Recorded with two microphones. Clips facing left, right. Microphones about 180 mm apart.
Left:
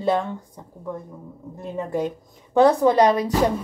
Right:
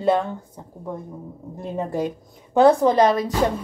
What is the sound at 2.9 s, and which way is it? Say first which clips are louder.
Speech: even; 10° left (ahead or behind).